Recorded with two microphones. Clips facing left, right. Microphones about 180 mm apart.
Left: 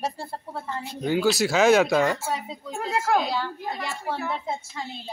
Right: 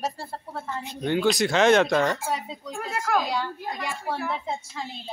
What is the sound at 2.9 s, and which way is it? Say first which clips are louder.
Speech: left 2 dB; 25° left (ahead or behind).